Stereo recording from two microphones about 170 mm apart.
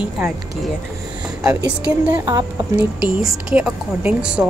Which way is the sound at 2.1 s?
15° right (ahead or behind).